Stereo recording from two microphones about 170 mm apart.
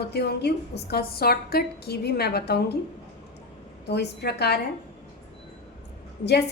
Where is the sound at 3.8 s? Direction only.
80° left.